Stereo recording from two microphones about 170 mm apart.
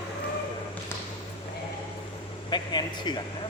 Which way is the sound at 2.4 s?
25° left (ahead or behind).